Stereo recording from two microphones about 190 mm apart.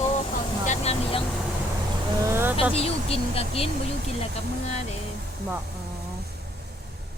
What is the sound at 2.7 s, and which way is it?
Speech, 30° left (ahead or behind).